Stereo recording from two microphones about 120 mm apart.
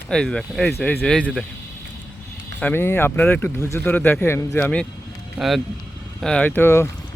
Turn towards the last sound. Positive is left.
turn(degrees=20)  # may be behind; listen again after turning